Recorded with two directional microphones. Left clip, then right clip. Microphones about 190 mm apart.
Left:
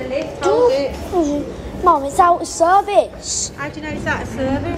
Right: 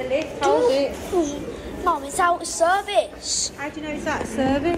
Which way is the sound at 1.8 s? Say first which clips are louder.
Left 8 dB; 25° left (ahead or behind).